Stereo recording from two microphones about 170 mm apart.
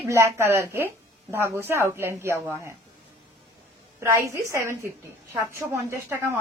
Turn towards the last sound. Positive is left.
turn(degrees=-15)  # may be behind; listen again after turning